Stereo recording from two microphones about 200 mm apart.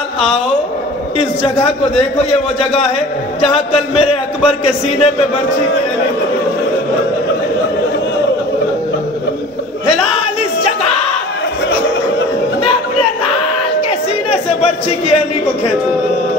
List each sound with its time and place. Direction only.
1.1 s a man's voice: 30° left (ahead or behind)
3.3 s a man's voice: 30° left (ahead or behind)